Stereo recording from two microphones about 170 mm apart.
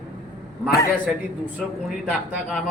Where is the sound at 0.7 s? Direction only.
60° left (ahead or behind).